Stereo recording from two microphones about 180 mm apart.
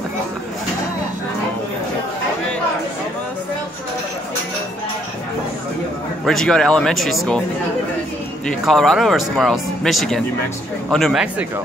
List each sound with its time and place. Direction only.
6.2 s speech: 5° left (ahead or behind)
8.5 s speech: centre (ahead or behind)